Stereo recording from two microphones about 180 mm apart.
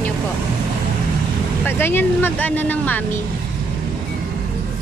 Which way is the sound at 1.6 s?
10° left (ahead or behind).